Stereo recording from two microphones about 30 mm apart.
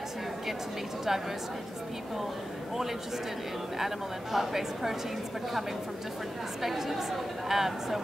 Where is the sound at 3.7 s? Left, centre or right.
Centre.